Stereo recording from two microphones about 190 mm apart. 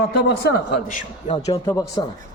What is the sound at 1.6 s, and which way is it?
Speech, 15° left (ahead or behind).